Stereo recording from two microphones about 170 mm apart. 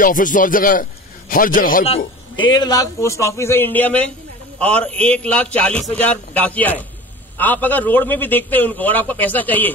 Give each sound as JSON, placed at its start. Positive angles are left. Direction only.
{"t": 0.0, "sound": "a man's voice", "side_deg": 50}
{"t": 1.9, "sound": "a man's voice", "side_deg": 30}